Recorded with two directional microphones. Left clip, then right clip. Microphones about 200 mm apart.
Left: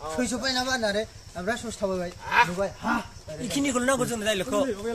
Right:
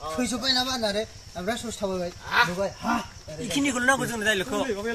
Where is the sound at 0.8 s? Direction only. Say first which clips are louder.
Even; 25° left (ahead or behind).